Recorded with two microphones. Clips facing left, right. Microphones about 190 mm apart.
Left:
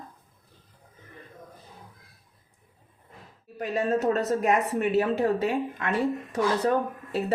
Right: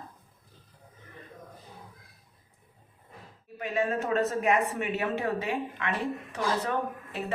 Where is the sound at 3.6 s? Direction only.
40° left (ahead or behind).